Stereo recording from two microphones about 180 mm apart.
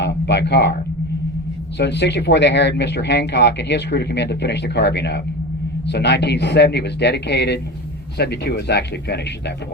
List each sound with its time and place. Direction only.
0.0 s a man's voice: 70° left (ahead or behind)
1.8 s speech: 70° left (ahead or behind)